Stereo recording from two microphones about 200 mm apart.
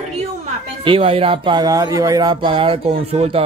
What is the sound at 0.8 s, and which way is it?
Speech, 25° right (ahead or behind).